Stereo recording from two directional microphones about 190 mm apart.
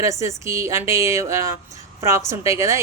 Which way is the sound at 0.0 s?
15° right (ahead or behind).